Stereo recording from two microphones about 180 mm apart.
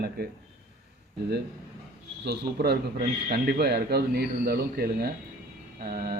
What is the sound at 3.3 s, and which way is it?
A man's voice, 60° right (ahead or behind).